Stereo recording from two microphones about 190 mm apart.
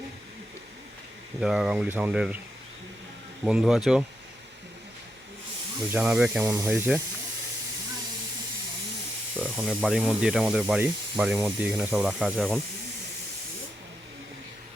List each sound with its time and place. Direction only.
1.4 s speech: 5° right (ahead or behind)
3.4 s speech: 5° right (ahead or behind)
5.9 s speech: 5° right (ahead or behind)
9.4 s snake: 5° right (ahead or behind)
9.8 s speech: 5° right (ahead or behind)